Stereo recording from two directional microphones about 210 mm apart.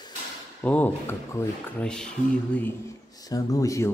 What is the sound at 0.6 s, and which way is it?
Speech, 10° left (ahead or behind).